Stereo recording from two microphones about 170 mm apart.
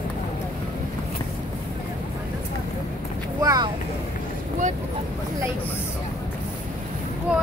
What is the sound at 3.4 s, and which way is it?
Boat, 20° right (ahead or behind).